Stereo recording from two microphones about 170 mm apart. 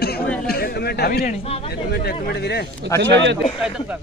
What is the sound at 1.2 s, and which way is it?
Speech, 35° left (ahead or behind).